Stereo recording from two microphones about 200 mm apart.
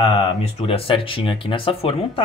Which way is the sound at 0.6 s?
30° left (ahead or behind).